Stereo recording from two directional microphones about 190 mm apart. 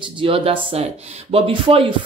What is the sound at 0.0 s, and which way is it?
Speech, 25° right (ahead or behind).